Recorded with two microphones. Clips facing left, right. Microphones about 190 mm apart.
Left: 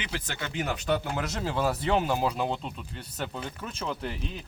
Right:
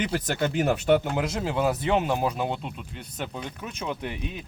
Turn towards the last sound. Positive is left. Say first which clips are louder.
# right 1 dB
turn(degrees=-10)  # may be behind; listen again after turning